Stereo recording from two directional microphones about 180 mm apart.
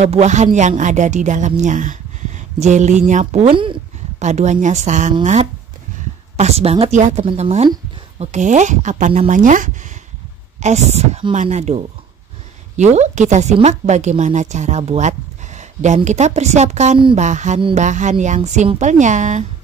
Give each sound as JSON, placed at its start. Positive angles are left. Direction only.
{"t": 0.0, "sound": "speech", "side_deg": -40}
{"t": 3.5, "sound": "speech", "side_deg": -30}
{"t": 4.2, "sound": "speech", "side_deg": -40}